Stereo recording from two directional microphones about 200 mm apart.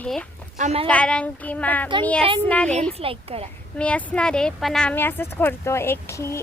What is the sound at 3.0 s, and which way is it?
Speech, 30° right (ahead or behind).